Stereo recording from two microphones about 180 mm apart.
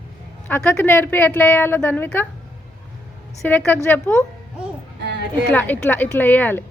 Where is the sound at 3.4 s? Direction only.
10° left (ahead or behind).